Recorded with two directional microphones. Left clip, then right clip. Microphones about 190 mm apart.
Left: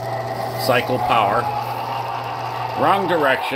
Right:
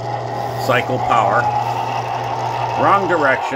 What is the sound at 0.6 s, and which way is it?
Speech, 20° left (ahead or behind).